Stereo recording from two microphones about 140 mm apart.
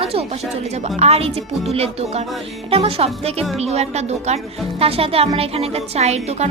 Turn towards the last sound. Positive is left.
turn(degrees=-50)  # may be behind; listen again after turning